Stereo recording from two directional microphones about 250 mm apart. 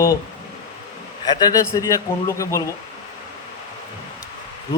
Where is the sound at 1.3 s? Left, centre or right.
Centre.